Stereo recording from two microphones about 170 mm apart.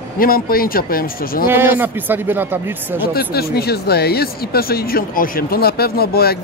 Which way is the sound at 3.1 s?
65° left (ahead or behind).